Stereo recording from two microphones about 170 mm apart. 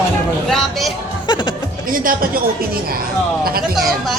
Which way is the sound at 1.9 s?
55° right (ahead or behind).